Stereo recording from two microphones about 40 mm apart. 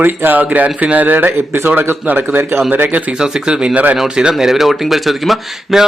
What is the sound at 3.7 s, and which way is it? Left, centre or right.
Speech, right.